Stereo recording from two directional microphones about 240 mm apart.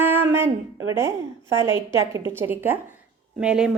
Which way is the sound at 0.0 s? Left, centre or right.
Centre.